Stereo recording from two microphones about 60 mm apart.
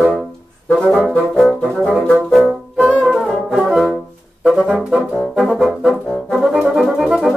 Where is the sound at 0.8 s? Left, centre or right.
Centre.